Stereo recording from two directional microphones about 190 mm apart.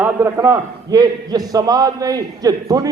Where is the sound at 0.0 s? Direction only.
10° right (ahead or behind).